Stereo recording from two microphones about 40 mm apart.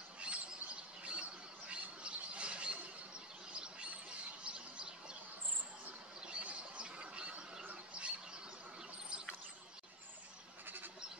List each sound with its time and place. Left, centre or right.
0.2 s bird: right
2.0 s squawk: right
3.5 s bird: right
4.5 s a sound: right
6.2 s squawk: right